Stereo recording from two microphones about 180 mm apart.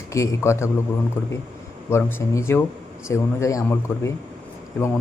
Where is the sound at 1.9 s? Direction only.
15° left (ahead or behind).